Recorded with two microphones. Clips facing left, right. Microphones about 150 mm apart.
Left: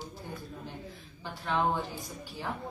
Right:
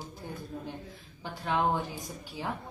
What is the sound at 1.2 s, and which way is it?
Speech, 15° right (ahead or behind).